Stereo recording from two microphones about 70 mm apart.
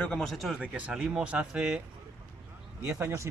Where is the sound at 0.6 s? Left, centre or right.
Centre.